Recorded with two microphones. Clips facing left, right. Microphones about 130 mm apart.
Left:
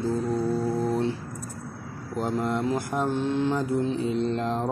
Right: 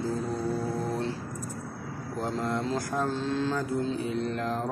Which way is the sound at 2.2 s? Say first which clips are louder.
Left 4 dB; 15° left (ahead or behind).